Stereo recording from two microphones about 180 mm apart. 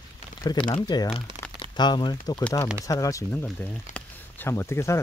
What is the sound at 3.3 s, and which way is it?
Speech, 10° left (ahead or behind).